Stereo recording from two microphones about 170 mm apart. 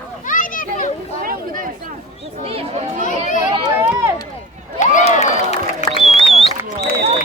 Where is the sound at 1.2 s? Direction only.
55° right (ahead or behind).